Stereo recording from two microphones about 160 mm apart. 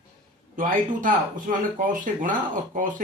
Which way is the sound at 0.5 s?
55° right (ahead or behind).